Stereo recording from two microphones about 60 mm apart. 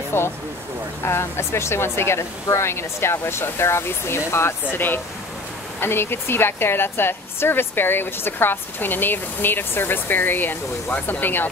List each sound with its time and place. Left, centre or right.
0.1 s speech: left